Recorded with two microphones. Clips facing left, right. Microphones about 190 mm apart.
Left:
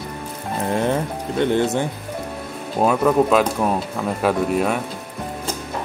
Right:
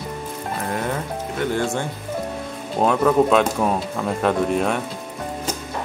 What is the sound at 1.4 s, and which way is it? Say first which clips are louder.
Speech: left 4 dB; 20° left (ahead or behind).